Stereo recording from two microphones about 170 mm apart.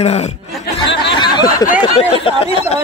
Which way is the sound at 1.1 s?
25° left (ahead or behind).